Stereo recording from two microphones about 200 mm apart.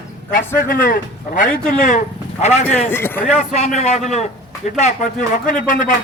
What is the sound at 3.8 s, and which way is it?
Speech, 35° left (ahead or behind).